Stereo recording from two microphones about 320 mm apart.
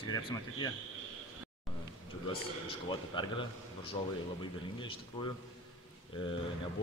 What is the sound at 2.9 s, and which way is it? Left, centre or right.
Speech, centre.